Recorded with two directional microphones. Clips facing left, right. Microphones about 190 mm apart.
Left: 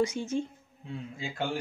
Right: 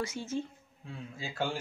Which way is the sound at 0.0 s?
15° left (ahead or behind).